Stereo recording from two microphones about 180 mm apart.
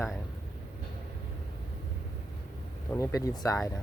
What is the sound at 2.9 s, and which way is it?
Speech, 15° left (ahead or behind).